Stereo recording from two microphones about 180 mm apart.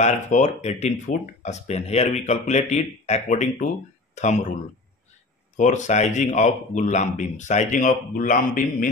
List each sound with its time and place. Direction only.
0.0 s speech: 40° left (ahead or behind)
5.6 s speech: 40° left (ahead or behind)